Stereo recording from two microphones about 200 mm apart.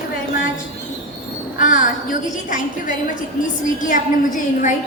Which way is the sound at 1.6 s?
40° left (ahead or behind).